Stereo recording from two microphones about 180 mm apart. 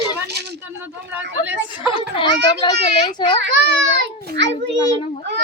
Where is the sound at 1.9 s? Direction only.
30° left (ahead or behind).